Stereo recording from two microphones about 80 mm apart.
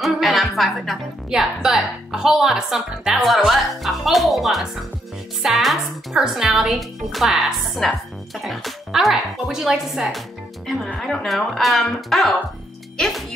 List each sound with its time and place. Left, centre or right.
0.0 s a woman's voice: centre